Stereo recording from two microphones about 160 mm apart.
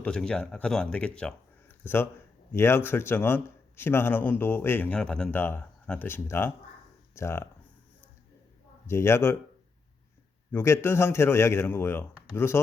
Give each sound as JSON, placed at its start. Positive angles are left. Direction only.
{"t": 0.0, "sound": "a man's voice", "side_deg": 5}
{"t": 8.9, "sound": "a man's voice", "side_deg": 15}
{"t": 10.5, "sound": "a man's voice", "side_deg": 15}